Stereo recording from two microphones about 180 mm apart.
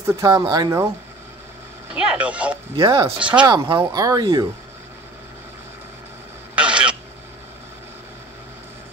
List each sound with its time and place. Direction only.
0.0 s speech: 20° right (ahead or behind)
2.0 s speech: 5° right (ahead or behind)
2.7 s speech: 20° right (ahead or behind)
6.5 s a sound: 5° right (ahead or behind)